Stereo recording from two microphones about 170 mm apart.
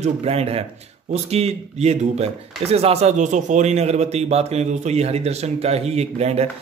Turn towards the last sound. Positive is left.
turn(degrees=-40)  # may be behind; listen again after turning